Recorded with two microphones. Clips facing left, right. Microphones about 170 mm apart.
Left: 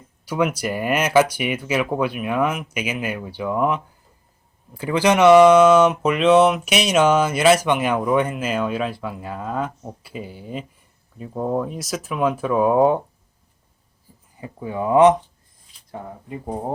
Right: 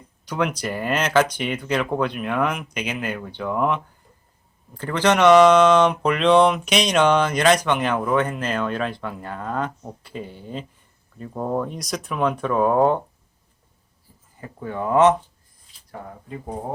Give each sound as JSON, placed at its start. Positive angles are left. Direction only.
{"t": 0.3, "sound": "speech", "side_deg": 10}
{"t": 14.4, "sound": "speech", "side_deg": 10}